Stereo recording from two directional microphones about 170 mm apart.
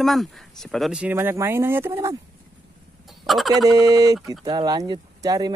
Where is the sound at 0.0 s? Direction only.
Centre (ahead or behind); by 2.1 s 15° right (ahead or behind).